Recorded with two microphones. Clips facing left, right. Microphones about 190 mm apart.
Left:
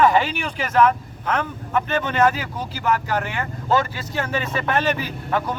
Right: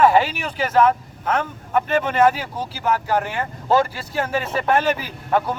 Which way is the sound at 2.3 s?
10° right (ahead or behind).